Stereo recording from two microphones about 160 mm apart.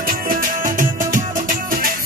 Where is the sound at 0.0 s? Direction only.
65° right (ahead or behind).